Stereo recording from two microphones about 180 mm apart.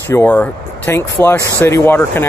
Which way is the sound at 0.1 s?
10° left (ahead or behind).